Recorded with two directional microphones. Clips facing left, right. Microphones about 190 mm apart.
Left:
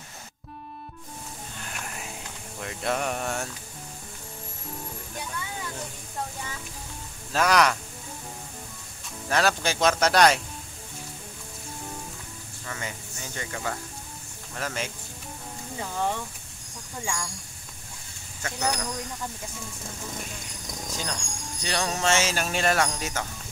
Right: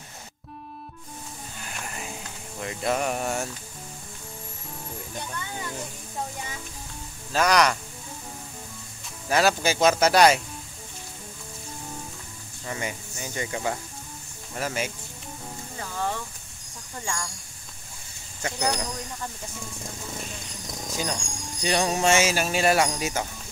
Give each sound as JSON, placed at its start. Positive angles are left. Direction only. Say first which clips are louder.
{"t": 1.6, "sound": "music", "louder": "right 2 dB", "side_deg": 0}
{"t": 2.6, "sound": "speech", "louder": "right 2 dB", "side_deg": 0}
{"t": 7.3, "sound": "speech", "louder": "right 1 dB", "side_deg": 0}
{"t": 9.3, "sound": "speech", "louder": "right 3 dB", "side_deg": -5}
{"t": 12.6, "sound": "speech", "louder": "right 4 dB", "side_deg": -15}
{"t": 15.8, "sound": "speech", "louder": "left 2 dB", "side_deg": 15}
{"t": 18.4, "sound": "speech", "louder": "right 2 dB", "side_deg": -15}
{"t": 20.9, "sound": "speech", "louder": "right 5 dB", "side_deg": -10}